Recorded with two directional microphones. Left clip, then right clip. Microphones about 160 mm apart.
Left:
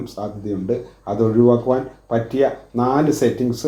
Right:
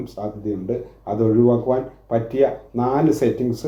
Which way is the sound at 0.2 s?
30° right (ahead or behind).